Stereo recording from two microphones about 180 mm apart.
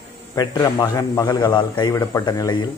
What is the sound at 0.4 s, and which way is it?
Speech, 20° left (ahead or behind).